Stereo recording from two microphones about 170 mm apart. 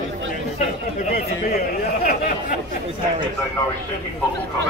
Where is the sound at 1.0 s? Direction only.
60° left (ahead or behind).